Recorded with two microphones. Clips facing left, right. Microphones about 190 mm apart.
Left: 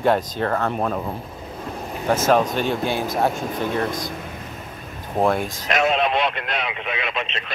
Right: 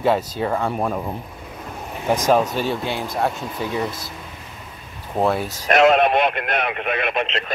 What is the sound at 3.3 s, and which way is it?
Speech, 50° left (ahead or behind).